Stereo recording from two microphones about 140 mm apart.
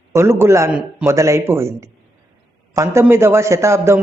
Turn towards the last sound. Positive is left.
turn(degrees=-20)  # may be behind; listen again after turning